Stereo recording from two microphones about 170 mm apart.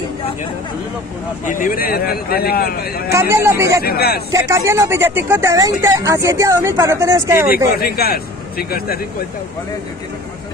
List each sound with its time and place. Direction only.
1.4 s a man's voice: 55° left (ahead or behind)
3.1 s speech: 15° right (ahead or behind)
3.8 s a man's voice: 65° left (ahead or behind)
4.3 s speech: 15° right (ahead or behind)
7.4 s a man's voice: 60° left (ahead or behind)